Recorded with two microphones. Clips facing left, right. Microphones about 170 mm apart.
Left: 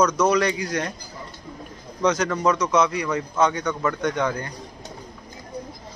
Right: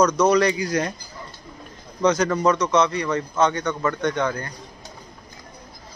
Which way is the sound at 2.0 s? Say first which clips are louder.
Right 2 dB; centre (ahead or behind).